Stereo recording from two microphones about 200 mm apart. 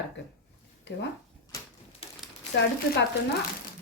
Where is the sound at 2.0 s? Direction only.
30° left (ahead or behind).